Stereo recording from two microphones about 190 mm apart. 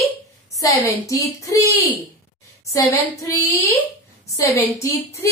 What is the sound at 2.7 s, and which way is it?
A woman's voice, 15° left (ahead or behind).